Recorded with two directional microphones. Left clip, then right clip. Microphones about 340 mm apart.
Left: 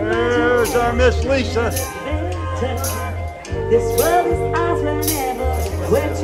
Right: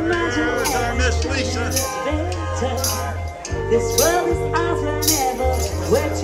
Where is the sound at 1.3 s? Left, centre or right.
Centre.